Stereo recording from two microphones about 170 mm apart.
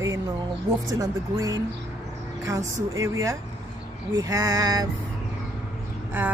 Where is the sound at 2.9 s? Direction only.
20° right (ahead or behind).